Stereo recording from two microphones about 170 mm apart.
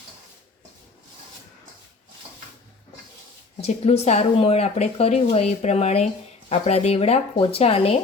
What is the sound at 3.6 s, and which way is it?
Speech, 40° left (ahead or behind).